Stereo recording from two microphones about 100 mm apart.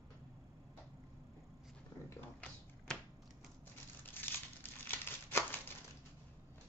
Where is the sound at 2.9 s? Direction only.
5° left (ahead or behind).